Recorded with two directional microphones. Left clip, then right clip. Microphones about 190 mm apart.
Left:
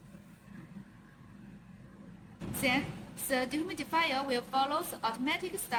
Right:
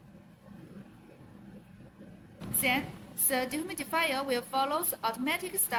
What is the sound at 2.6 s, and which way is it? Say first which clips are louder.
A woman's voice: right 1 dB; 15° right (ahead or behind).